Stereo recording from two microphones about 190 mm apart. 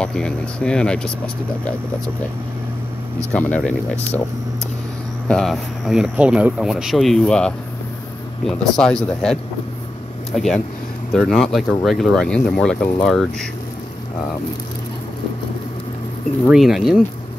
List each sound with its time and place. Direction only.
0.0 s speech: 5° left (ahead or behind)
3.3 s speech: 5° left (ahead or behind)
5.3 s speech: centre (ahead or behind)
10.3 s speech: centre (ahead or behind)
16.4 s speech: centre (ahead or behind)